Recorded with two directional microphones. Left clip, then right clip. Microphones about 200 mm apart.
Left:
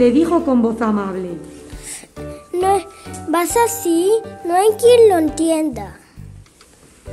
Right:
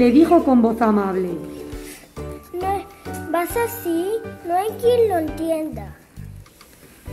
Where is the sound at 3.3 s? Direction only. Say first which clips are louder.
Left 6 dB; 55° left (ahead or behind).